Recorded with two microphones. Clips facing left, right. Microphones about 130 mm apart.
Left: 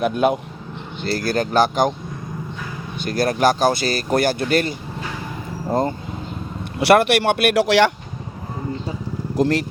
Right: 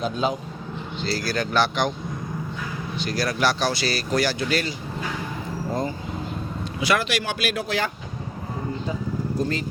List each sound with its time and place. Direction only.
0.0 s speech: 60° left (ahead or behind); by 1.9 s 45° left (ahead or behind)
3.0 s speech: 50° left (ahead or behind)
6.7 s speech: 60° left (ahead or behind); by 7.9 s 80° left
9.3 s speech: 80° left